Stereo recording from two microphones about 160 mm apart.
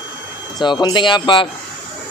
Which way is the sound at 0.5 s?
25° left (ahead or behind).